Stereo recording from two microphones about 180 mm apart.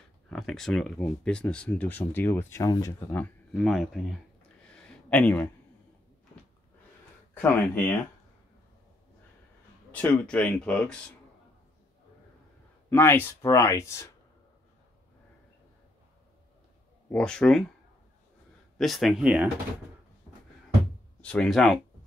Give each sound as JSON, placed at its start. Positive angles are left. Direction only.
{"t": 0.3, "sound": "speech", "side_deg": 5}
{"t": 4.8, "sound": "a sound", "side_deg": 5}
{"t": 7.3, "sound": "speech", "side_deg": 10}
{"t": 9.8, "sound": "speech", "side_deg": 10}
{"t": 12.9, "sound": "speech", "side_deg": 10}
{"t": 17.1, "sound": "speech", "side_deg": 5}
{"t": 18.8, "sound": "speech", "side_deg": 0}
{"t": 21.2, "sound": "speech", "side_deg": 5}